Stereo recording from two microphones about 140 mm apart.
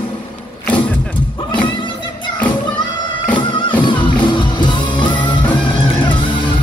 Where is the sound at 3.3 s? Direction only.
35° left (ahead or behind).